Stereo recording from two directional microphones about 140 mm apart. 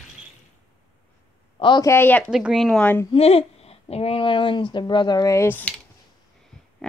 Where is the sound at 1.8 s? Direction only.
15° left (ahead or behind).